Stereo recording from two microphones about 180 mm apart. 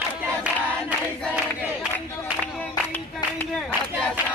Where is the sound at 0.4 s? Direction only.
5° right (ahead or behind).